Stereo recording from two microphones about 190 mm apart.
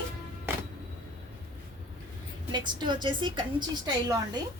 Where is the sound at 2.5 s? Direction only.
25° right (ahead or behind).